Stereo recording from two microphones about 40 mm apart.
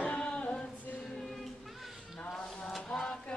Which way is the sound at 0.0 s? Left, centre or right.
Left.